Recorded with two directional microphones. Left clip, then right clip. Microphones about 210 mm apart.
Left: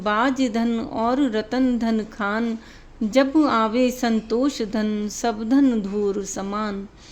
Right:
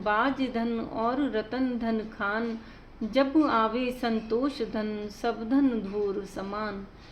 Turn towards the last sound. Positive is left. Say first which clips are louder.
# left 6 dB
turn(degrees=55)  # may be behind; listen again after turning